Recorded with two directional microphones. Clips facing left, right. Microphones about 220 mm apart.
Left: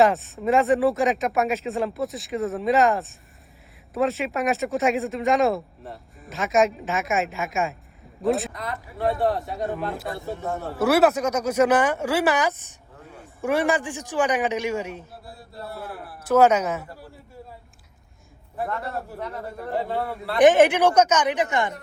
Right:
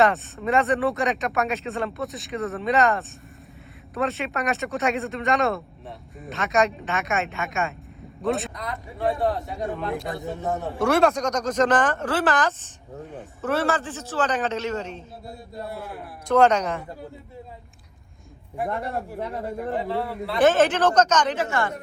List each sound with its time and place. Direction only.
0.0 s speech: centre (ahead or behind)
10.2 s speech: 20° right (ahead or behind)
10.8 s speech: 5° left (ahead or behind)
15.2 s speech: 20° right (ahead or behind)
16.2 s speech: 5° left (ahead or behind)
18.5 s speech: 15° right (ahead or behind)
20.4 s speech: 15° left (ahead or behind)